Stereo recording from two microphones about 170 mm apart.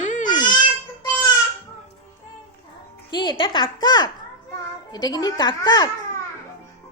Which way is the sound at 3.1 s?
25° left (ahead or behind).